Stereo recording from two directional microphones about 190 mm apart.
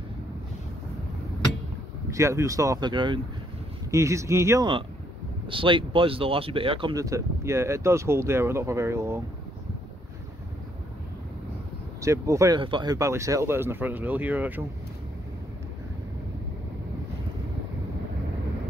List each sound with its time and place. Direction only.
2.0 s speech: 15° right (ahead or behind)
5.5 s speech: 25° right (ahead or behind)
12.0 s speech: 15° right (ahead or behind)